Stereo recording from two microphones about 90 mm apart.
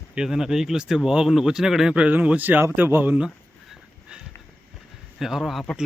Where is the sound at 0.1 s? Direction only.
5° right (ahead or behind).